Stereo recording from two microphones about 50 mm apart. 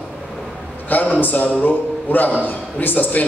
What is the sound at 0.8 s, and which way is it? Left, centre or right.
A man's voice, left.